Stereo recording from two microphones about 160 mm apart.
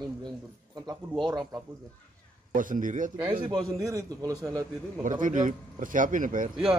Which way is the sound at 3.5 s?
20° right (ahead or behind).